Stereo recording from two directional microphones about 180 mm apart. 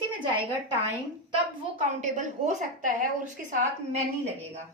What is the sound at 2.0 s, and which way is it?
A woman's voice, 40° right (ahead or behind).